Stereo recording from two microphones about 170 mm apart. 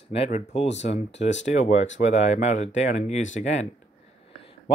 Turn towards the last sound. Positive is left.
turn(degrees=45)  # may be behind; listen again after turning